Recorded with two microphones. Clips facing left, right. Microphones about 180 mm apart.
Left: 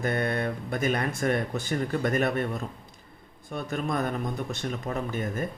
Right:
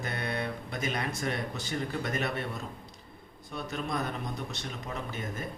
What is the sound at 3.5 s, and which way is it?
Speech, 50° left (ahead or behind).